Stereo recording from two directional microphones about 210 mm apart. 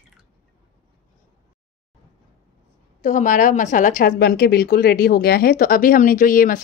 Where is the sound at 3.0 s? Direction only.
35° left (ahead or behind).